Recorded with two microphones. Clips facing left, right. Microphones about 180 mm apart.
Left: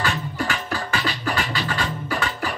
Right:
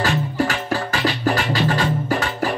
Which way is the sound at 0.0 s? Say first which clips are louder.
Right 5 dB; 40° right (ahead or behind).